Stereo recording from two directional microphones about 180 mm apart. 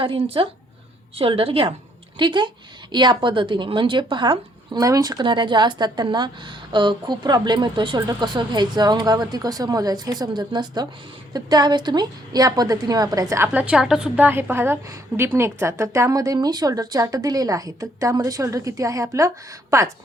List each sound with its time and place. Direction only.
0.0 s a woman's voice: 30° right (ahead or behind)